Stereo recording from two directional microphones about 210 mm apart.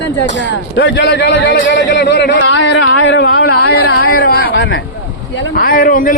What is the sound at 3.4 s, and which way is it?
Speech, 90° left.